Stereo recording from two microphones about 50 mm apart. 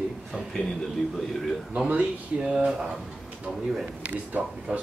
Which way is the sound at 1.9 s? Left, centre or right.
Right.